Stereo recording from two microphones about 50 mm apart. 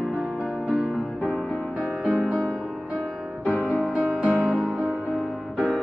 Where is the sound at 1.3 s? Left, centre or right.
Left.